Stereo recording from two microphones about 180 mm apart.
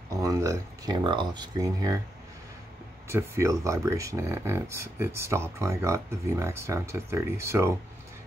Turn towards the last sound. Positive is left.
turn(degrees=-15)  # may be behind; listen again after turning